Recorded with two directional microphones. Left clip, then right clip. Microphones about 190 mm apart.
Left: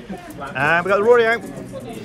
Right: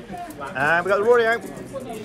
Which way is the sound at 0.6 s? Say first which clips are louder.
Left 3 dB; 15° right (ahead or behind).